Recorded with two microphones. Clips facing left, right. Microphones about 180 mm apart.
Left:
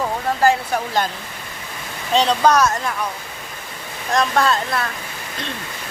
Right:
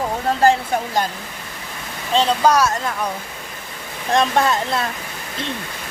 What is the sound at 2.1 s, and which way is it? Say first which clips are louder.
Speech: even; 5° right (ahead or behind).